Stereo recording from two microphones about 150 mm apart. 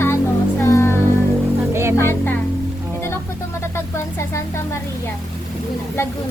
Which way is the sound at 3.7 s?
20° left (ahead or behind).